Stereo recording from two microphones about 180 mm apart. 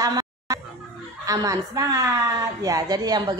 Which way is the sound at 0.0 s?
20° right (ahead or behind).